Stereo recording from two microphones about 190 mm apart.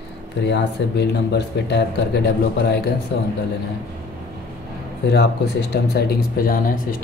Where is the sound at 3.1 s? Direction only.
75° left (ahead or behind).